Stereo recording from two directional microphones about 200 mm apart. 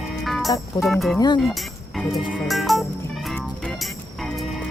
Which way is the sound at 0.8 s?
Centre (ahead or behind).